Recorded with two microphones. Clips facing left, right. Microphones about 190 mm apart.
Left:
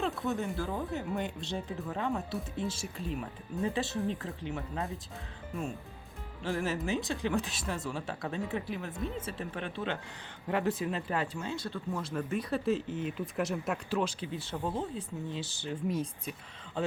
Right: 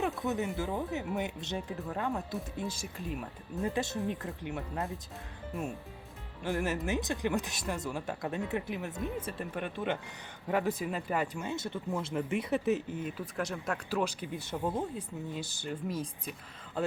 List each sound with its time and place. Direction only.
0.0 s speech: 20° right (ahead or behind)
0.6 s speech: 5° right (ahead or behind)
1.5 s speech: 5° right (ahead or behind)
2.3 s speech: 15° right (ahead or behind)
3.2 s speech: centre (ahead or behind)
3.9 s speech: 15° right (ahead or behind)
6.4 s speech: 15° right (ahead or behind)
11.5 s speech: 20° right (ahead or behind)
13.3 s speech: 5° left (ahead or behind)
13.9 s speech: 15° right (ahead or behind)